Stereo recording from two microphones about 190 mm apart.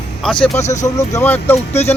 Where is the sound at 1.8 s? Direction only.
35° left (ahead or behind).